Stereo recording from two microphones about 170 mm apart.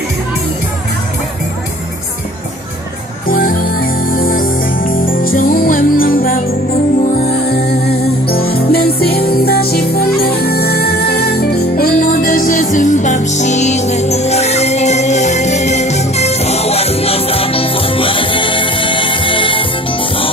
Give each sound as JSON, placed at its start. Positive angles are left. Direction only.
{"t": 3.2, "sound": "music", "side_deg": 55}
{"t": 7.9, "sound": "music", "side_deg": 65}